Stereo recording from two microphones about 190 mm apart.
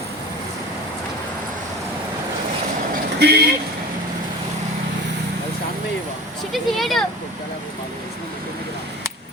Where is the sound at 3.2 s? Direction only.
60° right (ahead or behind).